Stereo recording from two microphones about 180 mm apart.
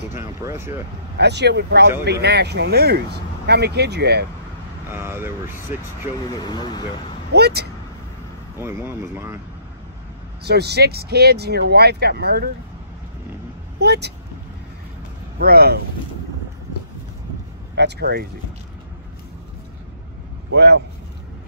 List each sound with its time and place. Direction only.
0.1 s speech: 15° right (ahead or behind)
1.1 s speech: 70° right (ahead or behind)
4.9 s speech: 10° right (ahead or behind)
6.4 s speech: 25° left (ahead or behind)
7.3 s speech: 65° right (ahead or behind)
8.5 s speech: 15° right (ahead or behind)
10.4 s speech: 65° right (ahead or behind)
13.7 s speech: 65° right (ahead or behind)
15.3 s speech: 60° right (ahead or behind)
17.7 s speech: 65° right (ahead or behind)
20.5 s speech: 65° right (ahead or behind)